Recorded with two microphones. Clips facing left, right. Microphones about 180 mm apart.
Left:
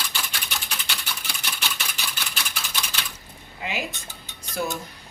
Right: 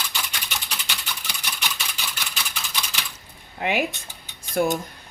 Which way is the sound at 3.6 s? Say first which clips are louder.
Right 7 dB; 60° right (ahead or behind).